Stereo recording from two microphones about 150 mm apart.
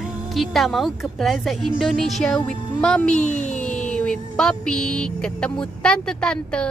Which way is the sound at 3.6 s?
5° left (ahead or behind).